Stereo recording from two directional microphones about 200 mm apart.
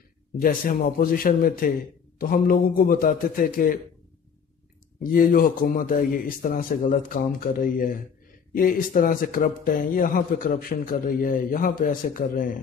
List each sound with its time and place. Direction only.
0.4 s speech: 45° left (ahead or behind)
5.0 s speech: 45° left (ahead or behind)